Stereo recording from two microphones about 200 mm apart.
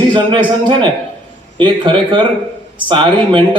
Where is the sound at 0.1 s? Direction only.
25° right (ahead or behind).